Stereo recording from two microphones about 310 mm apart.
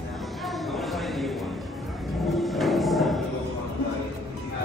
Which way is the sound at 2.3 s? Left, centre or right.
Centre.